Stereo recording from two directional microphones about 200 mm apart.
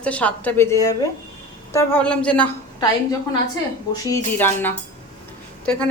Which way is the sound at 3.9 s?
15° left (ahead or behind).